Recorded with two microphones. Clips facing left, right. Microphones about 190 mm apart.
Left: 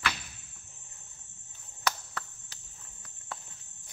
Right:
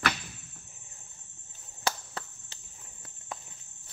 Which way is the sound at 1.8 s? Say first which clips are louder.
Even; 30° right (ahead or behind).